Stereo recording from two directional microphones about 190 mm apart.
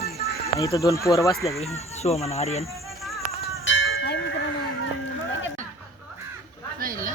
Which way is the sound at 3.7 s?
90° left.